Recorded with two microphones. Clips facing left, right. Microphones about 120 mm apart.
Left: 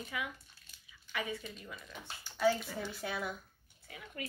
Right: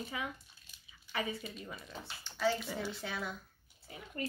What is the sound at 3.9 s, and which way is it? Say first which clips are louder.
Speech: right 1 dB; 30° right (ahead or behind).